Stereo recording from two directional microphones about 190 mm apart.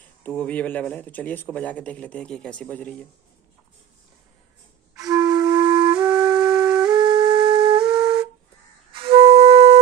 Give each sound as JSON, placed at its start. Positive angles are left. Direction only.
{"t": 0.2, "sound": "speech", "side_deg": 10}
{"t": 4.9, "sound": "flute", "side_deg": -20}
{"t": 5.9, "sound": "flute", "side_deg": -5}
{"t": 6.9, "sound": "flute", "side_deg": -25}